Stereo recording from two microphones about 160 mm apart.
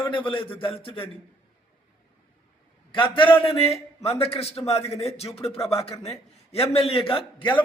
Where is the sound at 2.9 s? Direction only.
30° left (ahead or behind).